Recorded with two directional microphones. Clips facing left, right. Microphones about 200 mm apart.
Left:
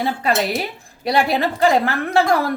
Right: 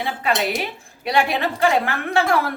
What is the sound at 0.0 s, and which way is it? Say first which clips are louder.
A woman's voice: left 3 dB; 40° left (ahead or behind).